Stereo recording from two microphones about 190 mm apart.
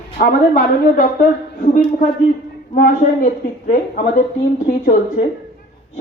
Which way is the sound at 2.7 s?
45° left (ahead or behind).